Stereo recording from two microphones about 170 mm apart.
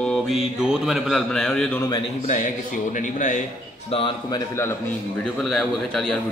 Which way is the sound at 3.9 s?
30° left (ahead or behind).